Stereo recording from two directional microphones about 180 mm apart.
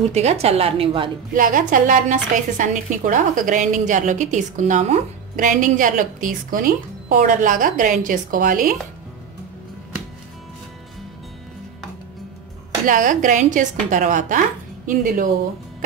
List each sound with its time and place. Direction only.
0.1 s a woman's voice: 35° right (ahead or behind)
1.3 s a woman's voice: 50° right (ahead or behind)
12.8 s a woman's voice: 45° right (ahead or behind)